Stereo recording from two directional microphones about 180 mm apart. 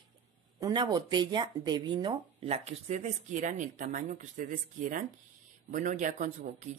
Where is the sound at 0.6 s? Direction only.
25° right (ahead or behind).